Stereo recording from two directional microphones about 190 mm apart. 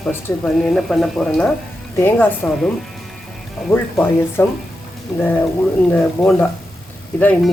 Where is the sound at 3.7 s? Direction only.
10° left (ahead or behind).